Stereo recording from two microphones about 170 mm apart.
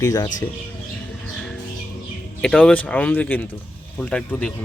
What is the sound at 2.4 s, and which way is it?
Speech, 5° left (ahead or behind).